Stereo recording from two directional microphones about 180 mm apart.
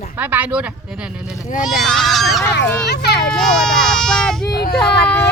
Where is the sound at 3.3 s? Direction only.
5° left (ahead or behind).